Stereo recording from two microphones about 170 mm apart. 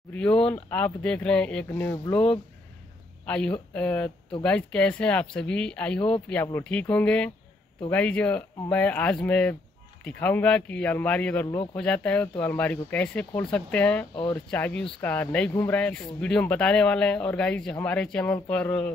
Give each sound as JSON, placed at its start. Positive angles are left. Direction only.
{"t": 0.1, "sound": "speech", "side_deg": 5}
{"t": 3.3, "sound": "speech", "side_deg": 5}
{"t": 11.4, "sound": "speech", "side_deg": 30}
{"t": 11.7, "sound": "speech", "side_deg": 5}